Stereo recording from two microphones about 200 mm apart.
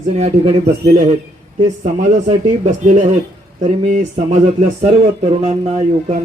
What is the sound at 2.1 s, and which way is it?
Speech, 35° right (ahead or behind).